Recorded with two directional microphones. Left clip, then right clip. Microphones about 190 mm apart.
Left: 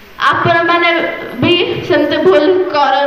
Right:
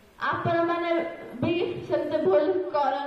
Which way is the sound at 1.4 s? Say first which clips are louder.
Left 15 dB; 65° right (ahead or behind).